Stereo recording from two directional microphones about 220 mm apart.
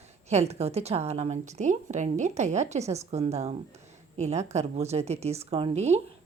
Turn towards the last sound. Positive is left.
turn(degrees=-30)  # may be behind; listen again after turning